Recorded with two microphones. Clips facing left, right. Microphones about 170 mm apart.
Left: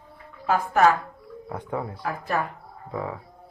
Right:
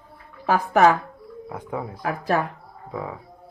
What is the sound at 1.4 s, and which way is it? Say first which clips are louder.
Speech: even; 10° right (ahead or behind).